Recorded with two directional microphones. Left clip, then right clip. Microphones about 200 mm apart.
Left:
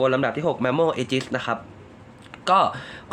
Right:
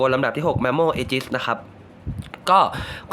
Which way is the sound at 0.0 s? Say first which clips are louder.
Right 2 dB; 25° right (ahead or behind).